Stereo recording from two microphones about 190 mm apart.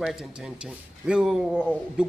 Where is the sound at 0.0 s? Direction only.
Centre (ahead or behind).